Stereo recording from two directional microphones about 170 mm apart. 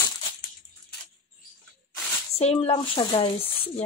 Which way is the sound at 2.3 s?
35° left (ahead or behind).